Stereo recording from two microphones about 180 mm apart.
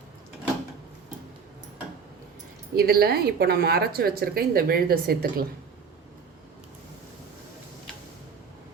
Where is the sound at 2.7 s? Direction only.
60° right (ahead or behind).